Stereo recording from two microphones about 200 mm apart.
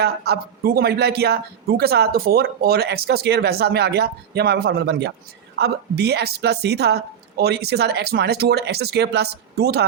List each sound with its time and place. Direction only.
0.0 s a man's voice: 50° right (ahead or behind)